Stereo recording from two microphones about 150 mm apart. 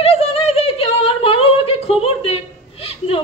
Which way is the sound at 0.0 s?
40° left (ahead or behind).